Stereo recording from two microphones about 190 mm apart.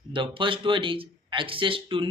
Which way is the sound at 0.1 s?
25° right (ahead or behind).